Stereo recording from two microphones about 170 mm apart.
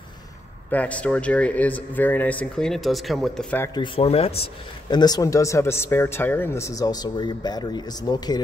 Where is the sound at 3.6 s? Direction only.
25° left (ahead or behind).